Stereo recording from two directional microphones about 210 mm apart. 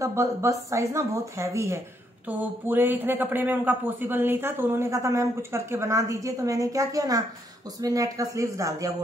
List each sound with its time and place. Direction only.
0.0 s speech: 15° right (ahead or behind)